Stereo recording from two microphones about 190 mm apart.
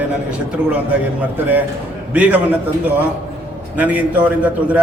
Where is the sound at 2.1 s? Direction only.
10° right (ahead or behind).